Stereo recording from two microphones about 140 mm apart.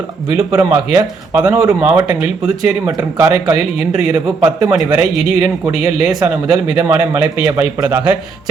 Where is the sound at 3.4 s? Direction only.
5° right (ahead or behind).